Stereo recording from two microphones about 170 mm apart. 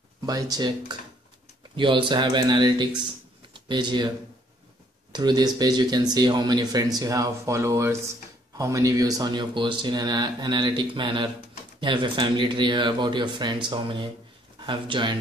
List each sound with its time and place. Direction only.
0.3 s speech: 20° right (ahead or behind)
5.1 s speech: 25° right (ahead or behind)